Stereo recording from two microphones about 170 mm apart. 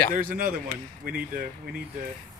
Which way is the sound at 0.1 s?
55° right (ahead or behind).